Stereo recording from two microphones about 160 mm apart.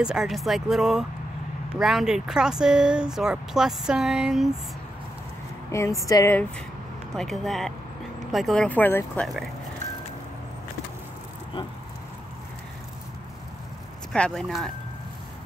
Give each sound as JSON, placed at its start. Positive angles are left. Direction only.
{"t": 0.0, "sound": "speech", "side_deg": -5}
{"t": 5.7, "sound": "speech", "side_deg": 20}
{"t": 7.2, "sound": "speech", "side_deg": 0}
{"t": 14.1, "sound": "speech", "side_deg": 5}